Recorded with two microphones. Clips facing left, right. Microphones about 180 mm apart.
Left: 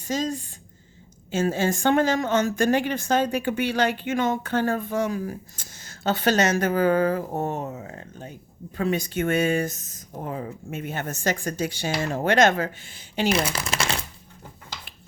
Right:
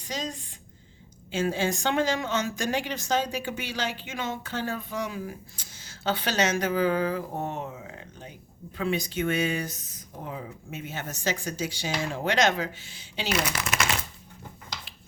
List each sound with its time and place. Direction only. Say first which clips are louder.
0.0 s a woman's voice: left 8 dB; 45° left (ahead or behind)
13.3 s speech: left 3 dB; 30° left (ahead or behind)